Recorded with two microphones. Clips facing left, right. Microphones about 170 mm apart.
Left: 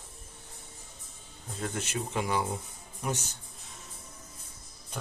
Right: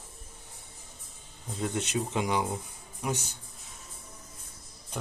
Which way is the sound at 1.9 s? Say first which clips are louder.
Right 1 dB; 20° right (ahead or behind).